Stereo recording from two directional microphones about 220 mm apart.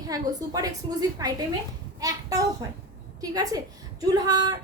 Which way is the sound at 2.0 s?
15° right (ahead or behind).